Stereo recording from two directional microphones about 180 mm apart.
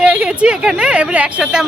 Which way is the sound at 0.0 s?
5° right (ahead or behind).